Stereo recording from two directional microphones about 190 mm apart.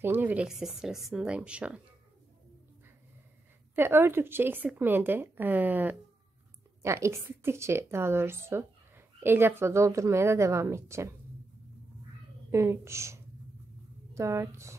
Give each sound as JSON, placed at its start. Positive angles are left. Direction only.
{"t": 0.0, "sound": "speech", "side_deg": -10}
{"t": 3.7, "sound": "a woman's voice", "side_deg": -10}
{"t": 12.4, "sound": "a woman's voice", "side_deg": -15}